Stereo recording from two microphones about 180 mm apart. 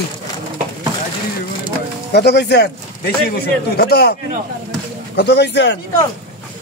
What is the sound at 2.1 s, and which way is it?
Speech, 70° left (ahead or behind).